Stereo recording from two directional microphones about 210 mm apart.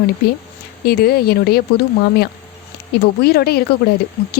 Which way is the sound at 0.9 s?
45° left (ahead or behind).